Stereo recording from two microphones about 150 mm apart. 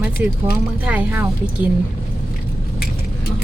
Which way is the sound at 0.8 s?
10° right (ahead or behind).